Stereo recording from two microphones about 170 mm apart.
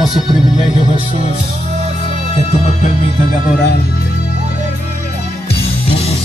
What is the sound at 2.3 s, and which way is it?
Music, 40° left (ahead or behind).